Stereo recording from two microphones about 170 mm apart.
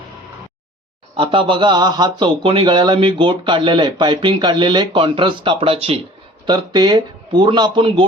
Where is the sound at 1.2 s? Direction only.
30° right (ahead or behind).